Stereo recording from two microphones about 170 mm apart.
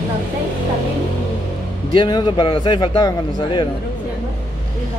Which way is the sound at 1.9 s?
25° left (ahead or behind).